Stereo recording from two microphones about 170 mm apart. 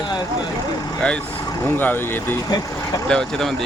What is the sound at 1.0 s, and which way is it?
Speech, 5° left (ahead or behind).